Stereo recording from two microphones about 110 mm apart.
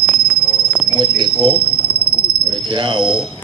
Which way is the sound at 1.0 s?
45° right (ahead or behind).